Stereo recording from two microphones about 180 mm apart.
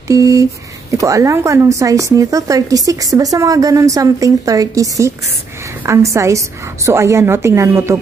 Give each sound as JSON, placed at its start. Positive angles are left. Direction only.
{"t": 0.1, "sound": "a woman's voice", "side_deg": -20}